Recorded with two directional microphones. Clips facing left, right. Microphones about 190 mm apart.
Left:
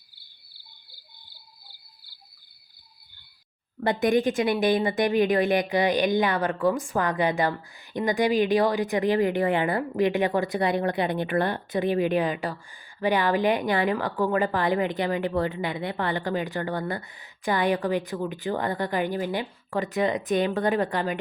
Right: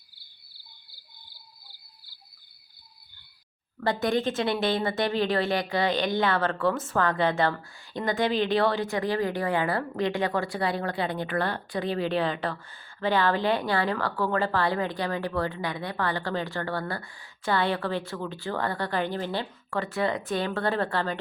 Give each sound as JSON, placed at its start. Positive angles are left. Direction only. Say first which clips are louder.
{"t": 3.8, "sound": "speech", "louder": "left 3 dB", "side_deg": 20}